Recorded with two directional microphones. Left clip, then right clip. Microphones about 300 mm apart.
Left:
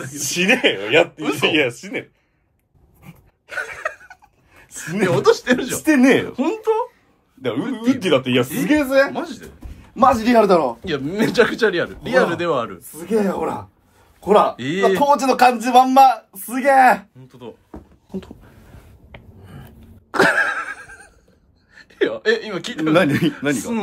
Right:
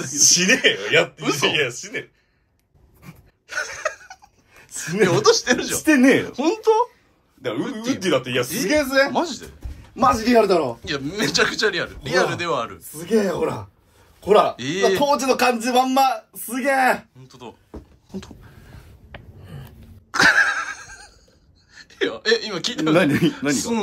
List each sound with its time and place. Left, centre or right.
0.2 s speech: centre
1.2 s a man's voice: centre
1.5 s speech: centre
3.5 s a sound: centre
4.7 s a man's voice: centre
6.3 s a man's voice: centre
7.7 s speech: left
9.1 s a man's voice: centre
10.3 s a man's voice: centre
17.2 s a man's voice: centre
19.4 s a sound: centre
21.7 s a man's voice: centre